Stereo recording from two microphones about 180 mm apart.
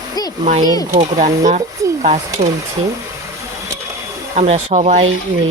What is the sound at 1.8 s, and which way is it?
Speech, 20° right (ahead or behind).